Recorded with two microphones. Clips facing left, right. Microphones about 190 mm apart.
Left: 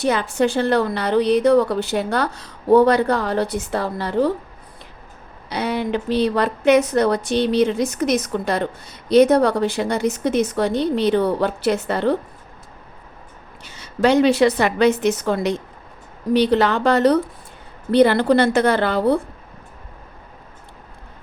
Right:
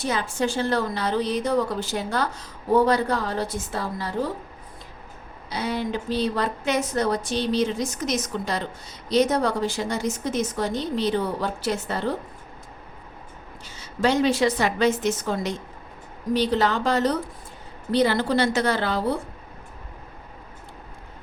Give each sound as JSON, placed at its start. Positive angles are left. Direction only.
{"t": 0.0, "sound": "a woman's voice", "side_deg": 65}
{"t": 5.5, "sound": "a woman's voice", "side_deg": 65}
{"t": 13.7, "sound": "a woman's voice", "side_deg": 65}